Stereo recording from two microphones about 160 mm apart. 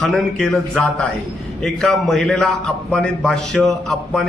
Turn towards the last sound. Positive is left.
turn(degrees=5)  # may be behind; listen again after turning